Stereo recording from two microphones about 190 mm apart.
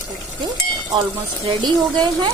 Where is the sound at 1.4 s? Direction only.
20° right (ahead or behind).